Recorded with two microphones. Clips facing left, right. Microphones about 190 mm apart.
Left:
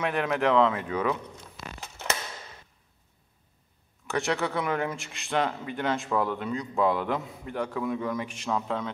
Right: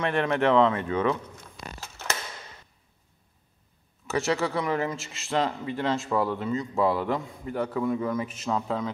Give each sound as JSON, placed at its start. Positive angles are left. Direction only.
{"t": 0.0, "sound": "speech", "side_deg": 5}
{"t": 1.8, "sound": "a sound", "side_deg": 15}
{"t": 4.1, "sound": "speech", "side_deg": 0}